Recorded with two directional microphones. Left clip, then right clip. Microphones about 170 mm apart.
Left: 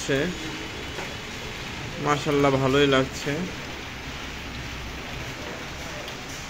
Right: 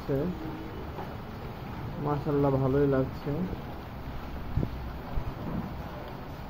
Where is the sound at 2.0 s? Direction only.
45° left (ahead or behind).